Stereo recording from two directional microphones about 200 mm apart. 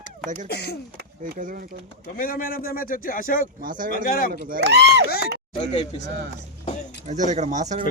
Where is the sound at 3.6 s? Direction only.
40° right (ahead or behind).